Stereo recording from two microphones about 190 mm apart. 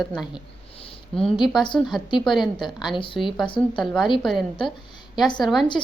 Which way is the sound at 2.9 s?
25° left (ahead or behind).